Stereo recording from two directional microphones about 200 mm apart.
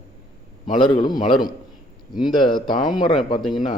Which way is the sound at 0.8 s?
25° left (ahead or behind).